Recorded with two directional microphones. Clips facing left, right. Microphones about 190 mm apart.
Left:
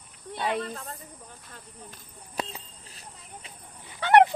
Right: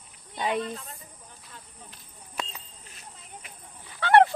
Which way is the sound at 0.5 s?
55° left (ahead or behind).